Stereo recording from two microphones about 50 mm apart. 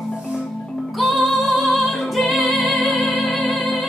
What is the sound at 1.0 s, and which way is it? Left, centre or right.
Music, centre.